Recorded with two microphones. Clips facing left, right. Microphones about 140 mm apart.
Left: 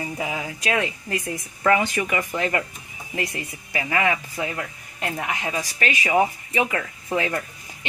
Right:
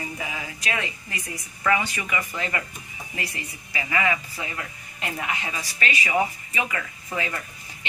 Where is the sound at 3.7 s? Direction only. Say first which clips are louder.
Left 2 dB; 50° left (ahead or behind).